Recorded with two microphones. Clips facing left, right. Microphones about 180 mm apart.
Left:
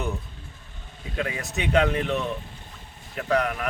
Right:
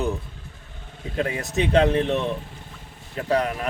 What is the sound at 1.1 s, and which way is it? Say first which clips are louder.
Speech: right 5 dB; 35° right (ahead or behind).